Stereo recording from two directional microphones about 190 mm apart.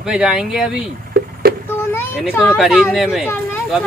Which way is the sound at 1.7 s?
10° left (ahead or behind).